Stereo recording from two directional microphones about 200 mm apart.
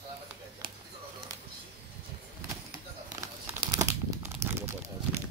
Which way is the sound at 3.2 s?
15° right (ahead or behind).